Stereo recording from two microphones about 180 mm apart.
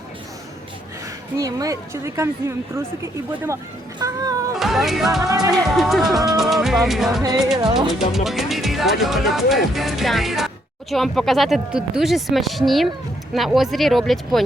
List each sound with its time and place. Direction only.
1.4 s speech: 20° right (ahead or behind)
4.0 s cat: 20° right (ahead or behind)
4.5 s music: centre (ahead or behind)
5.2 s music: 20° right (ahead or behind)
5.5 s speech: centre (ahead or behind)
7.6 s music: 25° right (ahead or behind)
7.9 s speech: centre (ahead or behind)